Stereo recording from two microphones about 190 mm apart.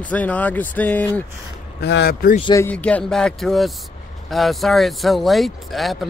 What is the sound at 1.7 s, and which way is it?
Speech, 60° left (ahead or behind).